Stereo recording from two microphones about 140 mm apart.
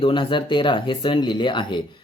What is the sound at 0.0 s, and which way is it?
Speech, 35° left (ahead or behind).